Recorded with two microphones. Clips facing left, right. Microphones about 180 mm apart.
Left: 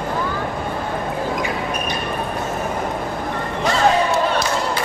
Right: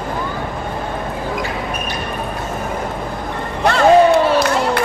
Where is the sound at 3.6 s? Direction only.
60° right (ahead or behind).